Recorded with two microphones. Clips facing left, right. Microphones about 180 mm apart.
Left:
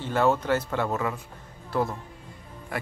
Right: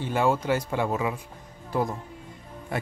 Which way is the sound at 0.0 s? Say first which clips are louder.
Left 1 dB; 10° right (ahead or behind).